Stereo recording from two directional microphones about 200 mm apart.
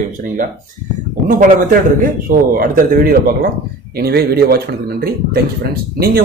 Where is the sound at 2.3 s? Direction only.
45° right (ahead or behind).